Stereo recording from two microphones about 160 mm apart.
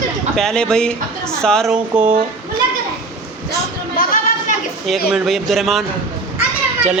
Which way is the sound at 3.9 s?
60° left (ahead or behind).